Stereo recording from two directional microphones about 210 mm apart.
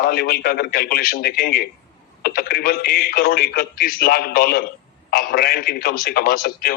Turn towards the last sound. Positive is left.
turn(degrees=45)  # may be behind; listen again after turning